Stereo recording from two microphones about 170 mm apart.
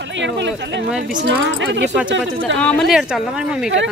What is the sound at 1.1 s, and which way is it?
Speech, 90° right.